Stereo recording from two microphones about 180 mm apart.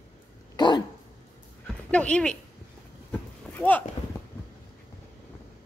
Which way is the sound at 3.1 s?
10° left (ahead or behind).